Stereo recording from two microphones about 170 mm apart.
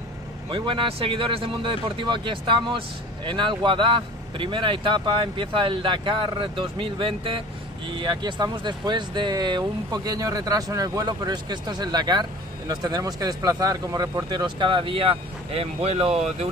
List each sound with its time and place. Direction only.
0.5 s speech: 30° right (ahead or behind)